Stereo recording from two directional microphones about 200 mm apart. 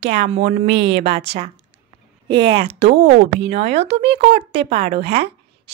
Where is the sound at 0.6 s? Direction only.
60° right (ahead or behind).